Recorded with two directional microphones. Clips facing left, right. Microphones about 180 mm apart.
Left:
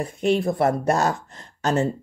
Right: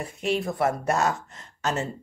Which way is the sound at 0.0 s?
35° left (ahead or behind).